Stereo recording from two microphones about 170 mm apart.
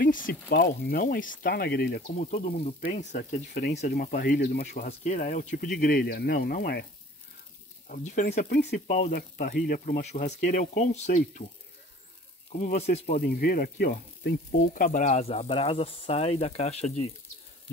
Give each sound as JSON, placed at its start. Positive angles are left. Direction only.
{"t": 0.0, "sound": "a sound", "side_deg": 55}
{"t": 0.5, "sound": "speech", "side_deg": 65}
{"t": 2.1, "sound": "speech", "side_deg": 50}
{"t": 3.4, "sound": "speech", "side_deg": 70}
{"t": 4.8, "sound": "speech", "side_deg": 45}
{"t": 7.9, "sound": "speech", "side_deg": 45}
{"t": 8.3, "sound": "speech", "side_deg": 65}
{"t": 8.7, "sound": "speech", "side_deg": 45}
{"t": 9.1, "sound": "speech", "side_deg": 60}
{"t": 12.5, "sound": "speech", "side_deg": 45}
{"t": 13.2, "sound": "speech", "side_deg": 60}